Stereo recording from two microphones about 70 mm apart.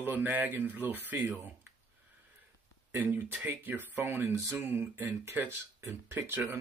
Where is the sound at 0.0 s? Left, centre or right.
Right.